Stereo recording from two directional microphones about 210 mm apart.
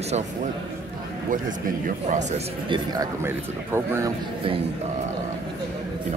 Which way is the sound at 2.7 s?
20° right (ahead or behind).